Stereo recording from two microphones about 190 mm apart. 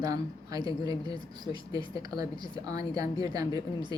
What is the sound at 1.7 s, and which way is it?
A woman's voice, 20° right (ahead or behind).